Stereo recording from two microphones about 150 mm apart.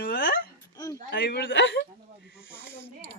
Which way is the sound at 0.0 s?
75° left (ahead or behind).